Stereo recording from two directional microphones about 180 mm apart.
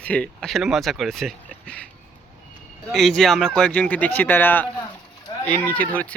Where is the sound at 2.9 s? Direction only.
Centre (ahead or behind).